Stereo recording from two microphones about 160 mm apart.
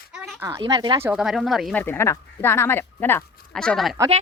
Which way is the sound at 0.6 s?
25° right (ahead or behind).